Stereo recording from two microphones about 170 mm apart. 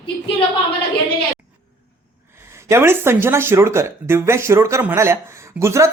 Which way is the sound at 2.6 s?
15° right (ahead or behind).